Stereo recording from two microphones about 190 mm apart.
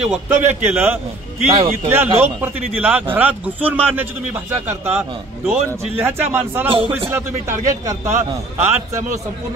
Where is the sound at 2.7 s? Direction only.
10° right (ahead or behind).